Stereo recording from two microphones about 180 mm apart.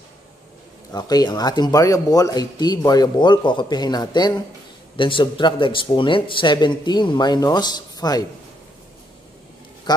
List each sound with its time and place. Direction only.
0.9 s speech: 20° left (ahead or behind)
9.9 s speech: 25° left (ahead or behind)